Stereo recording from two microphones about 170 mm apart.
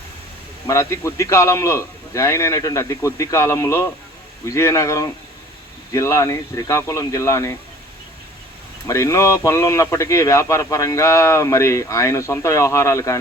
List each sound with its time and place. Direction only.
0.7 s speech: 15° left (ahead or behind)
8.9 s speech: 20° left (ahead or behind)